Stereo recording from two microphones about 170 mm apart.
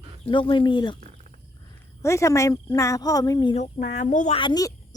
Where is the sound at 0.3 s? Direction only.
30° left (ahead or behind).